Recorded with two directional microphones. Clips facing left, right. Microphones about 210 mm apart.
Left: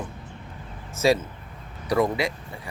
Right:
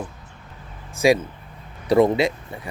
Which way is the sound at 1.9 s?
25° right (ahead or behind).